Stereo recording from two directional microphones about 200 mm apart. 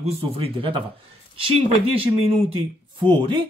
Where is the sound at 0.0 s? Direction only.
30° right (ahead or behind).